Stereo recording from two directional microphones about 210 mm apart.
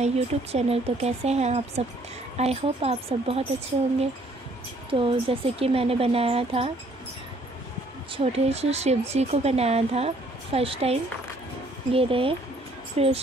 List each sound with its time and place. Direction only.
0.0 s speech: 30° right (ahead or behind)
4.9 s speech: 25° right (ahead or behind)
8.1 s speech: 30° right (ahead or behind)